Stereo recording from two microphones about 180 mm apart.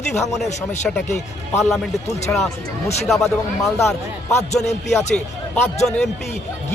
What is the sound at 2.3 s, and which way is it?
Speech, 10° left (ahead or behind).